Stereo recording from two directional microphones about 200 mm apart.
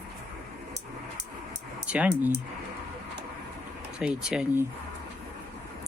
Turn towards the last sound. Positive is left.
turn(degrees=-5)  # may be behind; listen again after turning